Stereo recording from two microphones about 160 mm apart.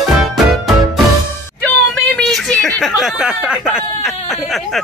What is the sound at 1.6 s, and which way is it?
Speech, 5° left (ahead or behind).